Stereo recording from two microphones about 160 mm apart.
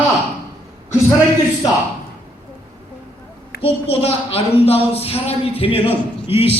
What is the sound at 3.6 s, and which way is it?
A man's voice, 35° left (ahead or behind).